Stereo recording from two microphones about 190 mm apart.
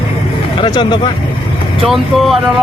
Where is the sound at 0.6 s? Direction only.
25° left (ahead or behind).